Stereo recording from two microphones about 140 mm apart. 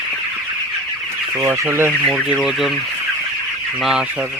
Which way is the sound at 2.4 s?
Centre (ahead or behind).